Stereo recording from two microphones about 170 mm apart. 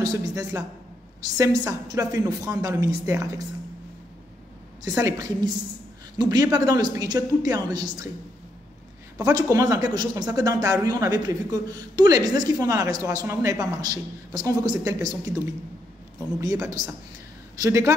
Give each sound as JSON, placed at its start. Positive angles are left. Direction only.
{"t": 0.0, "sound": "speech", "side_deg": -20}
{"t": 4.8, "sound": "speech", "side_deg": -20}
{"t": 9.2, "sound": "speech", "side_deg": -20}
{"t": 16.3, "sound": "speech", "side_deg": -15}